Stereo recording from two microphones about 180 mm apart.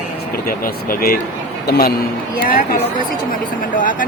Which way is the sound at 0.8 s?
55° left (ahead or behind).